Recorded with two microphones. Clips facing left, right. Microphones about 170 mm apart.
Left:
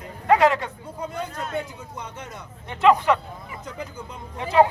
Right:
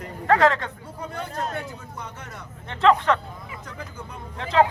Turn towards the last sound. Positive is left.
turn(degrees=15)  # may be behind; listen again after turning